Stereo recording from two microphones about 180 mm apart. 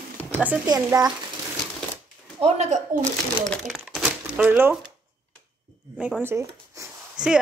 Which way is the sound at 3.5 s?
5° left (ahead or behind).